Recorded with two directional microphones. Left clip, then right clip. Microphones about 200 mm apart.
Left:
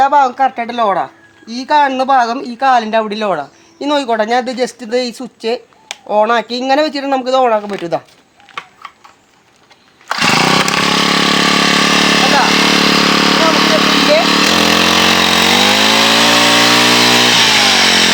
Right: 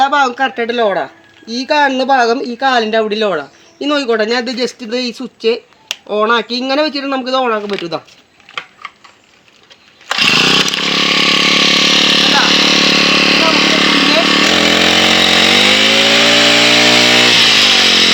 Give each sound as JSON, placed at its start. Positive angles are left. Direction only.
{"t": 0.0, "sound": "speech", "side_deg": 30}
{"t": 10.1, "sound": "chainsaw", "side_deg": 5}
{"t": 10.3, "sound": "vehicle", "side_deg": 15}